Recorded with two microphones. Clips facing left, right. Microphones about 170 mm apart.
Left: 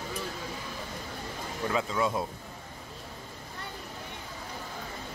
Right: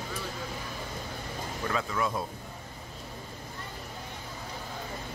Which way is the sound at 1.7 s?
20° left (ahead or behind).